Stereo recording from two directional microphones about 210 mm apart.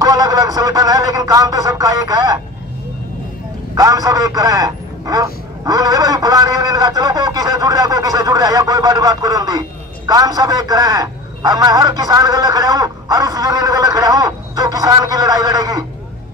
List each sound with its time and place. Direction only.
0.0 s speech: 15° right (ahead or behind)
3.7 s a man's voice: 15° right (ahead or behind)